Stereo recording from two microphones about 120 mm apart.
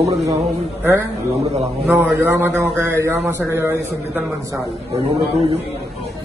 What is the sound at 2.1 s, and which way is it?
A man's voice, 20° right (ahead or behind).